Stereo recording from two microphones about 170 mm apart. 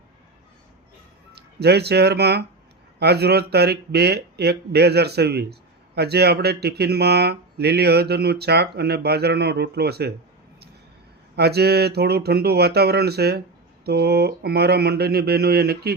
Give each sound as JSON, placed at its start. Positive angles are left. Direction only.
{"t": 1.4, "sound": "speech", "side_deg": -75}
{"t": 11.3, "sound": "speech", "side_deg": -70}